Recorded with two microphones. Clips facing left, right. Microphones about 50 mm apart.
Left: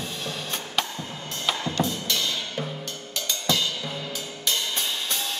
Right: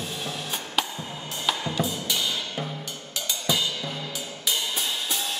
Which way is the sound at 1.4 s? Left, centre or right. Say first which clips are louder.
Left 1 dB; centre.